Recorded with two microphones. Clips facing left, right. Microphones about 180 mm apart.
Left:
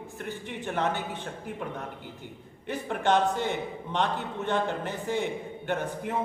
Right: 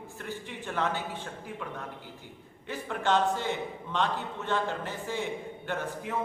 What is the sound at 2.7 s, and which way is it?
Speech, 60° left (ahead or behind).